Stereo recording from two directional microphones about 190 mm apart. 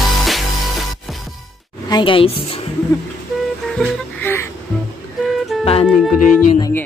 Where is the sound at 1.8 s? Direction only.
25° left (ahead or behind).